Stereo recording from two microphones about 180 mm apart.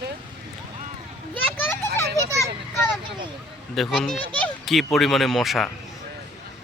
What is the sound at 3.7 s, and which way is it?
Speech, centre (ahead or behind).